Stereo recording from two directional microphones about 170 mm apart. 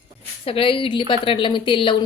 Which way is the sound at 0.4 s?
35° left (ahead or behind).